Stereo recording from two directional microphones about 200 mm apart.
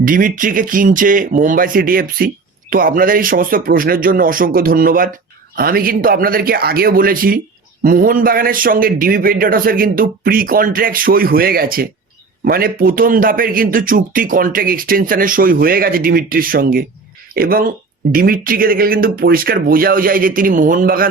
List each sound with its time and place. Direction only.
0.0 s speech: 45° right (ahead or behind)